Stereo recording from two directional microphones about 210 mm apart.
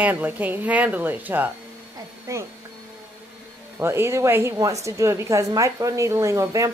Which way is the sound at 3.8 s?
10° right (ahead or behind).